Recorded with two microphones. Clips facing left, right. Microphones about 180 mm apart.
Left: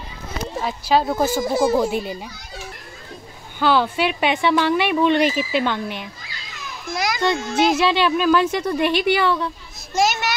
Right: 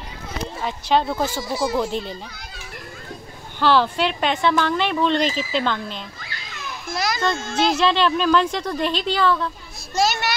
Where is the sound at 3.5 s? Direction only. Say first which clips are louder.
Even; 5° left (ahead or behind).